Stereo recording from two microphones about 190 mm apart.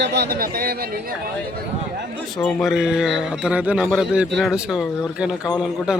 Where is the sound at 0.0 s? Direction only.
60° right (ahead or behind).